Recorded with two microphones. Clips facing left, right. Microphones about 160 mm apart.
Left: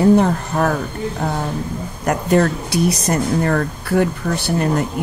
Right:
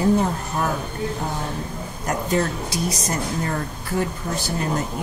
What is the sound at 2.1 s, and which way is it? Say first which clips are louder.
Speech: left 7 dB; 65° left (ahead or behind).